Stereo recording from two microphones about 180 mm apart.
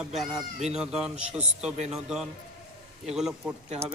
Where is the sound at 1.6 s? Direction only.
40° right (ahead or behind).